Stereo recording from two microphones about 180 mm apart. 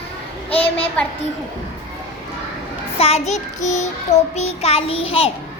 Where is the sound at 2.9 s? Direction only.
35° left (ahead or behind).